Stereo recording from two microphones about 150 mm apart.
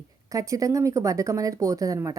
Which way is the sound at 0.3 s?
20° right (ahead or behind).